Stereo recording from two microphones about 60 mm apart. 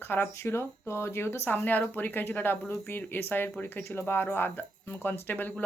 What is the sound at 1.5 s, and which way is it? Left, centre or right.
Speech, left.